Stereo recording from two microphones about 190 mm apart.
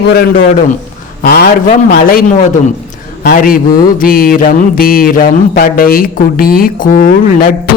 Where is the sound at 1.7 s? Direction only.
50° left (ahead or behind).